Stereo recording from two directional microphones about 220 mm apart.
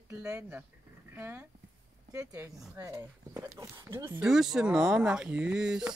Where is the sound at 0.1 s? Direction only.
10° right (ahead or behind).